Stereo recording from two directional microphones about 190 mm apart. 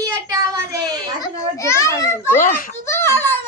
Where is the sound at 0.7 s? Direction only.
20° right (ahead or behind).